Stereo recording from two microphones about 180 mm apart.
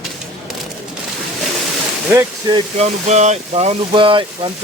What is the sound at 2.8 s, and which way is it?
Speech, 40° right (ahead or behind).